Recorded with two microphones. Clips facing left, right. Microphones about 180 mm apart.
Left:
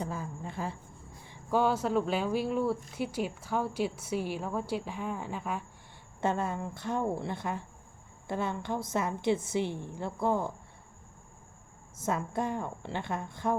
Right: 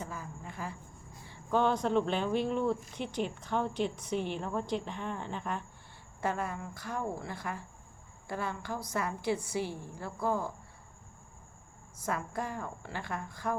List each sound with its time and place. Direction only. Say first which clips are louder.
0.0 s cricket: left 5 dB; 30° left (ahead or behind)
1.5 s speech: left 1 dB; 5° left (ahead or behind)
6.1 s a woman's voice: left 3 dB; 25° left (ahead or behind)
11.9 s a woman's voice: left 4 dB; 25° left (ahead or behind)